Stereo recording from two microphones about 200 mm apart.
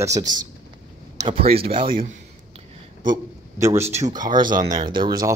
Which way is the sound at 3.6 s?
15° right (ahead or behind).